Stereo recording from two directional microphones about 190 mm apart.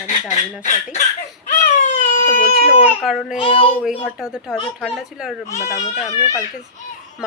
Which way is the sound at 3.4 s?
30° left (ahead or behind).